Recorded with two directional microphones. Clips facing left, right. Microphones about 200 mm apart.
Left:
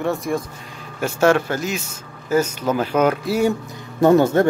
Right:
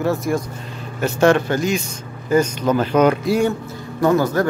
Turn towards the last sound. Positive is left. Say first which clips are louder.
# left 3 dB
turn(degrees=25)  # may be behind; listen again after turning